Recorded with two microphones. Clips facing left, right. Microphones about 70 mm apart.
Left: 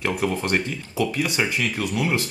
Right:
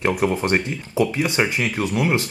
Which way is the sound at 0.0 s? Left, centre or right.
Centre.